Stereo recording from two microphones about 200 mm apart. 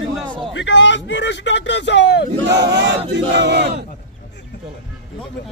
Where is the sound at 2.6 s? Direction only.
60° right (ahead or behind).